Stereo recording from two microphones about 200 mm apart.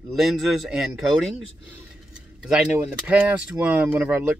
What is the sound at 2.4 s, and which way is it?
Speech, 5° right (ahead or behind).